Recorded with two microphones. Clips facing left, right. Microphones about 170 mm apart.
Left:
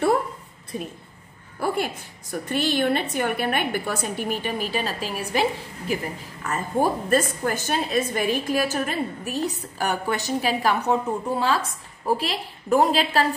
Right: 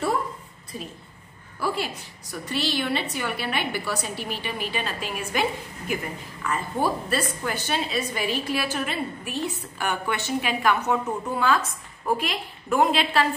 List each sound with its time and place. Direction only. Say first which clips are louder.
0.7 s a woman's voice: left 5 dB; 55° left (ahead or behind); by 5.9 s 35° left (ahead or behind)
6.4 s a woman's voice: left 3 dB; 45° left (ahead or behind)